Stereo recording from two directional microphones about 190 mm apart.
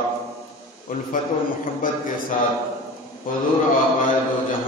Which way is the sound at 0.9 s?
45° left (ahead or behind).